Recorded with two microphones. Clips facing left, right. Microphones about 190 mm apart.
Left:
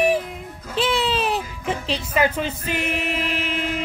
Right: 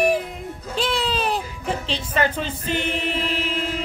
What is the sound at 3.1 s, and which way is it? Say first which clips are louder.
Chant: even; 30° right (ahead or behind).